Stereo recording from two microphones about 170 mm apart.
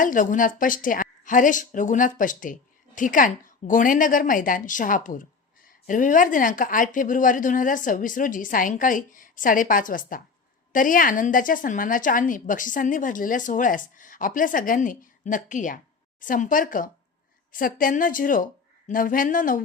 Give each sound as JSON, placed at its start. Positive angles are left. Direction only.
{"t": 0.0, "sound": "a woman's voice", "side_deg": 50}